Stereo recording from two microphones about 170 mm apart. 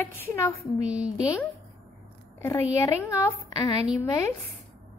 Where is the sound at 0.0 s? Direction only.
15° left (ahead or behind).